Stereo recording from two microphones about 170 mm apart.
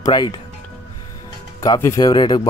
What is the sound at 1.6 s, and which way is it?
Speech, 20° left (ahead or behind).